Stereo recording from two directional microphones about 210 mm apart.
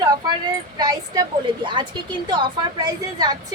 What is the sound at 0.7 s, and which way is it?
A woman's voice, 20° right (ahead or behind).